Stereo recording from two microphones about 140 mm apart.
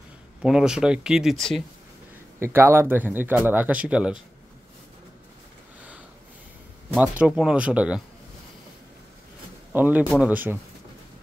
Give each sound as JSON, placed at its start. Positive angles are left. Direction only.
{"t": 0.4, "sound": "speech", "side_deg": -5}
{"t": 2.4, "sound": "speech", "side_deg": -20}
{"t": 6.9, "sound": "speech", "side_deg": -10}
{"t": 9.7, "sound": "a man's voice", "side_deg": -10}